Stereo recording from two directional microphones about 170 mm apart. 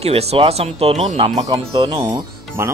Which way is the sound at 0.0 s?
35° right (ahead or behind).